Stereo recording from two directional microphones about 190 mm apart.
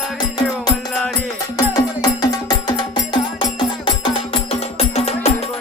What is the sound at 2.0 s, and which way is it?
Music, 20° left (ahead or behind).